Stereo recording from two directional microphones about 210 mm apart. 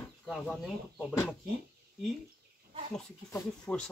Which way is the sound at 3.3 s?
15° left (ahead or behind).